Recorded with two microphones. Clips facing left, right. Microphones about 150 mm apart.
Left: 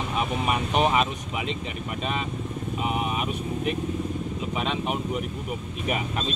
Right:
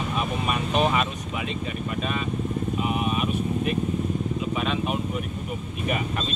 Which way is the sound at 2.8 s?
20° left (ahead or behind).